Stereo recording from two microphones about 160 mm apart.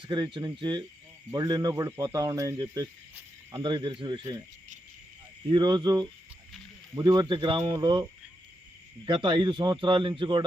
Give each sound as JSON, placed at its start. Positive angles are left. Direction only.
{"t": 0.0, "sound": "speech", "side_deg": -30}
{"t": 5.5, "sound": "speech", "side_deg": -30}
{"t": 9.0, "sound": "speech", "side_deg": -30}